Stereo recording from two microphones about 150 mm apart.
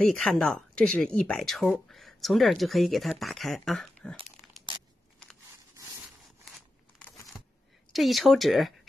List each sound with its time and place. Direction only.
0.0 s speech: 5° left (ahead or behind)
7.9 s speech: centre (ahead or behind)